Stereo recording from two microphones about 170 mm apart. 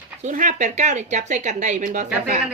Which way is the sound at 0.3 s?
45° right (ahead or behind).